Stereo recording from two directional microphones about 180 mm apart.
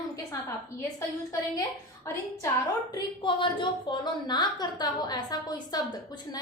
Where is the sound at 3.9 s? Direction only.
25° left (ahead or behind).